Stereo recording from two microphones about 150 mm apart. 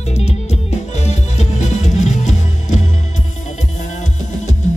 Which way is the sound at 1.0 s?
50° left (ahead or behind).